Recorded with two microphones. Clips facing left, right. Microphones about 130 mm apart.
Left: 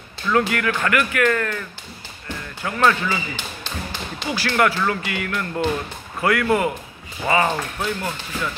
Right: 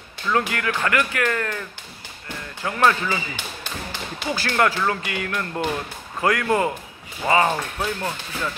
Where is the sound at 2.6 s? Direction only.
20° right (ahead or behind).